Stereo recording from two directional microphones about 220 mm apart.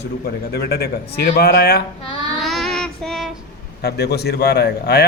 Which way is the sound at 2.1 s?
25° left (ahead or behind).